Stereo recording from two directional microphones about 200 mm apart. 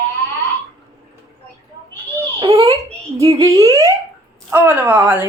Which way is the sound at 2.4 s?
20° right (ahead or behind).